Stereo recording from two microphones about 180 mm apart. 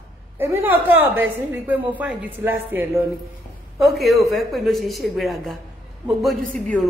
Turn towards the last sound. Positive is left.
turn(degrees=5)  # may be behind; listen again after turning